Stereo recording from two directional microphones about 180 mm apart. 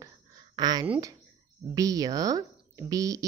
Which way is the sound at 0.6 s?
25° right (ahead or behind).